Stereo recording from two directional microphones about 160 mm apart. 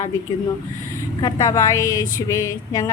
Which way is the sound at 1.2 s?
20° left (ahead or behind).